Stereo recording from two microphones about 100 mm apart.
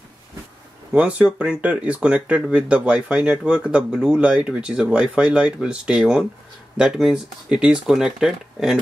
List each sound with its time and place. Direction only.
0.9 s speech: 10° right (ahead or behind)